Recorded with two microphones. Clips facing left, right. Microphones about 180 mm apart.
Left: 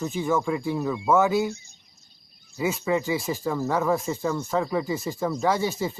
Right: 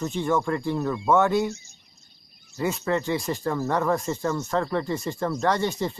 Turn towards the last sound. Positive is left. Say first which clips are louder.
# even
turn(degrees=5)  # may be behind; listen again after turning